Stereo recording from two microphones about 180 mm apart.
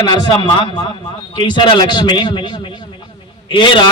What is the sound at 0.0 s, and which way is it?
A man's voice, 25° left (ahead or behind).